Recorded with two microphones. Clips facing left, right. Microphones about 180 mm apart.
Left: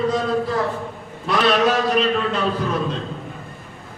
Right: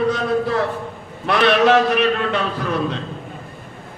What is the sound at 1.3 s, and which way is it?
Speech, 65° right (ahead or behind).